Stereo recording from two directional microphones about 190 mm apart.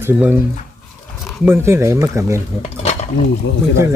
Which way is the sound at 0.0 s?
10° right (ahead or behind).